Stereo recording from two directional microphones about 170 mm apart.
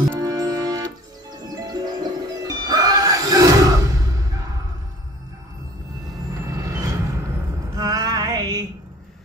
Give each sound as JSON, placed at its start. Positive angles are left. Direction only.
{"t": 0.2, "sound": "music", "side_deg": -20}
{"t": 1.3, "sound": "hoot", "side_deg": -25}
{"t": 6.4, "sound": "vehicle", "side_deg": -20}
{"t": 7.7, "sound": "a sound", "side_deg": -20}